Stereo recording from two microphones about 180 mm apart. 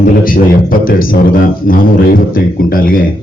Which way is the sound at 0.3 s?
50° left (ahead or behind).